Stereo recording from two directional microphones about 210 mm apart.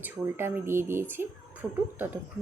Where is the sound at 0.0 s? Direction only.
10° right (ahead or behind).